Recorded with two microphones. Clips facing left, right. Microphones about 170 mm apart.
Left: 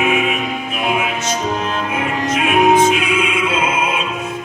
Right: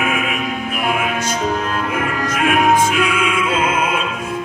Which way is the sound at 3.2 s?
25° left (ahead or behind).